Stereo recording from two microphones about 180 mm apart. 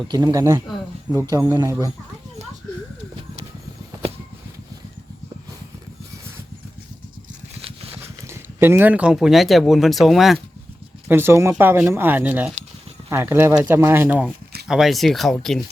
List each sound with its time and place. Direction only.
0.1 s speech: 25° right (ahead or behind)
7.6 s a sound: 35° right (ahead or behind)
8.3 s speech: 15° right (ahead or behind)
11.1 s speech: 10° right (ahead or behind)
14.7 s speech: centre (ahead or behind)